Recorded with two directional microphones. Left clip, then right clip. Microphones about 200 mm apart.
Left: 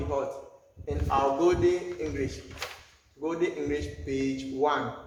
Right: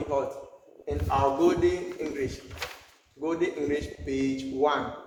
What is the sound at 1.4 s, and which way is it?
Speech, 25° right (ahead or behind).